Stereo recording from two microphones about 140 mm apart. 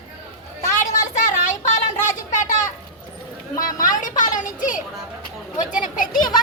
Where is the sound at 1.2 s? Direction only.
60° left (ahead or behind).